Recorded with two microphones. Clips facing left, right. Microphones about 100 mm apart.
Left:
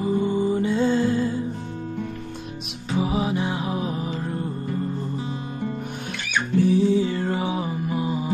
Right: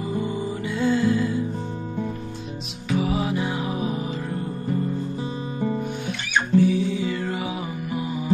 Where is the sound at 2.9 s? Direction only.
20° left (ahead or behind).